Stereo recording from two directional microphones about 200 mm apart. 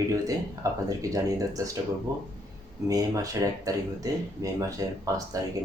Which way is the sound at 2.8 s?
15° right (ahead or behind).